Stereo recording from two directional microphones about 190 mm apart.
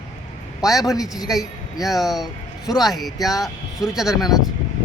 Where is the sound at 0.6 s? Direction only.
20° left (ahead or behind).